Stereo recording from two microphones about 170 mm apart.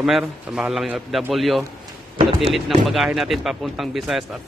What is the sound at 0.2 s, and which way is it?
Speech, 5° right (ahead or behind).